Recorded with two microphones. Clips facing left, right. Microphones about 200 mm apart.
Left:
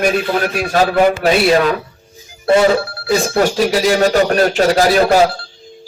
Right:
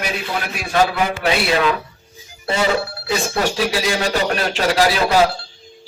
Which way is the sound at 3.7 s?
45° left (ahead or behind).